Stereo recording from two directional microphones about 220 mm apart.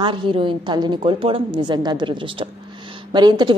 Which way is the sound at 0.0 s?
20° right (ahead or behind).